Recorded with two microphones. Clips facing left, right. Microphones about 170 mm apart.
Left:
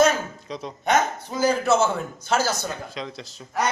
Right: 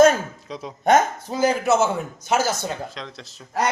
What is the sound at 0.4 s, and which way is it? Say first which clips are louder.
Speech: even; centre (ahead or behind).